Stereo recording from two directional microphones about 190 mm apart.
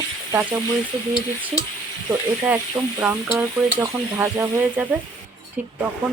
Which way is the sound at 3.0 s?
5° right (ahead or behind).